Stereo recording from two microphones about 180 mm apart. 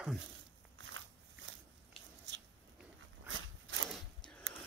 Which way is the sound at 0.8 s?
90° right.